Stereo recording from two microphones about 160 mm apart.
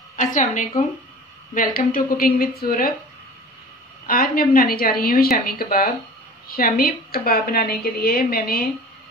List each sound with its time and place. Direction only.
0.1 s a woman's voice: 50° left (ahead or behind); by 2.9 s 65° left (ahead or behind)
4.1 s a woman's voice: 65° left (ahead or behind)